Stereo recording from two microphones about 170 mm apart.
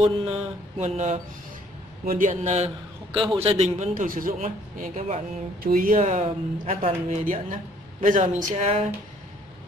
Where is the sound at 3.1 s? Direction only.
30° right (ahead or behind); by 4.3 s 55° right (ahead or behind).